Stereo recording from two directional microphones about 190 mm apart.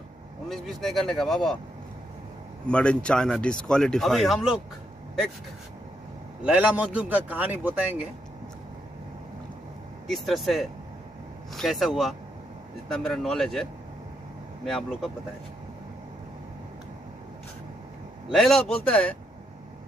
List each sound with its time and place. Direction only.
0.5 s speech: centre (ahead or behind)
2.7 s speech: 5° left (ahead or behind)
6.4 s a man's voice: 5° right (ahead or behind)
10.0 s speech: centre (ahead or behind)
18.3 s speech: centre (ahead or behind)